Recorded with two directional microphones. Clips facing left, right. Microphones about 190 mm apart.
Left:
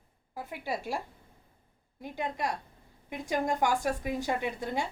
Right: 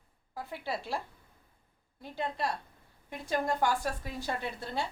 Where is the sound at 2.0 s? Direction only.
15° left (ahead or behind).